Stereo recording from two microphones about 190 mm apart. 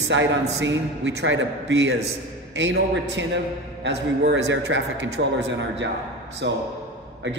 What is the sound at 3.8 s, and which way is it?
A man's voice, 70° right (ahead or behind).